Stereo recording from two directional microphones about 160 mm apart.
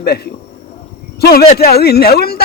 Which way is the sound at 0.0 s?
85° left.